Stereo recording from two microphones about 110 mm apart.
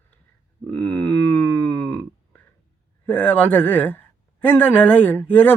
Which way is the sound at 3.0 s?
15° left (ahead or behind).